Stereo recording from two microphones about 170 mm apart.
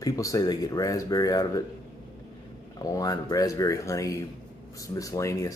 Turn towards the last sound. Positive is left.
turn(degrees=20)  # may be behind; listen again after turning